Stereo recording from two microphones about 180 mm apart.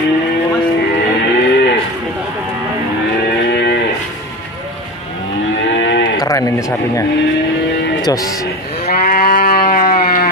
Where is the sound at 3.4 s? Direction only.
65° left (ahead or behind).